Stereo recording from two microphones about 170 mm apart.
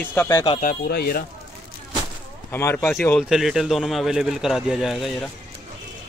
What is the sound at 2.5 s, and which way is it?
Speech, 15° left (ahead or behind).